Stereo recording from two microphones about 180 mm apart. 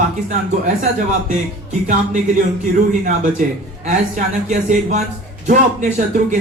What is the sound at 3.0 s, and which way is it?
A man's voice, 45° right (ahead or behind).